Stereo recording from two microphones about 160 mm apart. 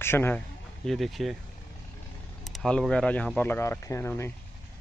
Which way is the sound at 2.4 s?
Centre (ahead or behind).